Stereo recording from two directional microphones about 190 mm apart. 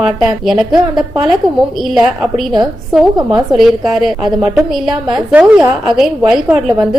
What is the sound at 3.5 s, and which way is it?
A woman's voice, centre (ahead or behind).